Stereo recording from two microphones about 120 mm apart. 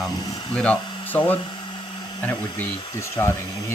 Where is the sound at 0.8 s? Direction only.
40° left (ahead or behind).